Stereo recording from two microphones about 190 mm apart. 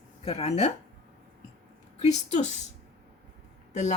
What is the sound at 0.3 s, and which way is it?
Speech, 35° left (ahead or behind).